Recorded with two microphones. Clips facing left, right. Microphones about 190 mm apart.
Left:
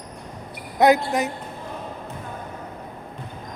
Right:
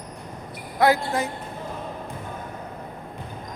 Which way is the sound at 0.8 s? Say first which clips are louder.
Left 3 dB; 20° left (ahead or behind).